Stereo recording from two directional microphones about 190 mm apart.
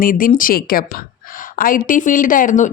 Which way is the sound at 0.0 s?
45° left (ahead or behind).